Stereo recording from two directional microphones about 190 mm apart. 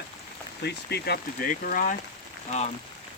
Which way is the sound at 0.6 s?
60° left (ahead or behind).